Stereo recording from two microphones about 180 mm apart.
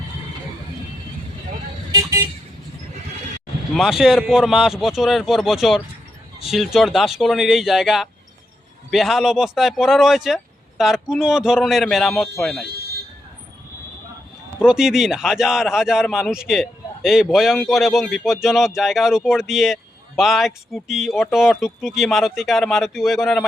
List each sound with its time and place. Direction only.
1.9 s vehicle: 20° right (ahead or behind)
3.7 s speech: centre (ahead or behind)
14.6 s speech: 5° right (ahead or behind)